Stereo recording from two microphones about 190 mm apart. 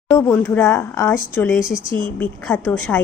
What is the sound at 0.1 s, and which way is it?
Speech, 15° left (ahead or behind).